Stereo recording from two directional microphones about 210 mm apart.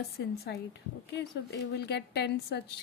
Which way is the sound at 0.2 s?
55° left (ahead or behind).